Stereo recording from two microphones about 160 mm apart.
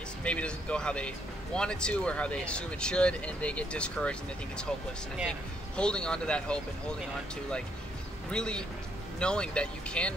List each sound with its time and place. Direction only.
0.2 s a man's voice: 10° left (ahead or behind)
5.8 s speech: 5° left (ahead or behind)
8.3 s a man's voice: 5° left (ahead or behind)